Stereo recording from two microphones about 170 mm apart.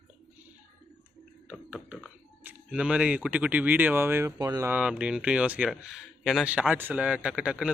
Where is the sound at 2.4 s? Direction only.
10° right (ahead or behind).